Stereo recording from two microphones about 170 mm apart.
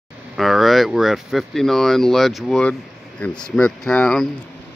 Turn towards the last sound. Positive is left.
turn(degrees=5)  # may be behind; listen again after turning